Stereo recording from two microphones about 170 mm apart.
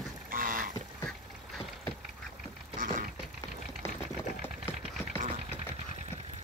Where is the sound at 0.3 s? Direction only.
55° right (ahead or behind).